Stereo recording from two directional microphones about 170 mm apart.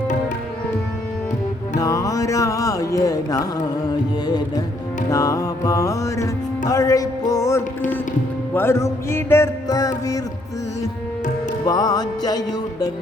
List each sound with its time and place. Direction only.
1.8 s music: 20° left (ahead or behind)
11.6 s music: 20° left (ahead or behind)